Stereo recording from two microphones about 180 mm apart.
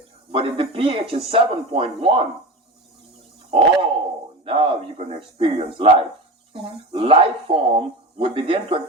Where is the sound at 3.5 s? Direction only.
30° right (ahead or behind).